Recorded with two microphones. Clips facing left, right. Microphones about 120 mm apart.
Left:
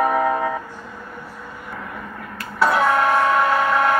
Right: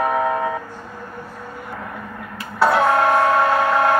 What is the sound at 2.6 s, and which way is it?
Printer, 30° right (ahead or behind).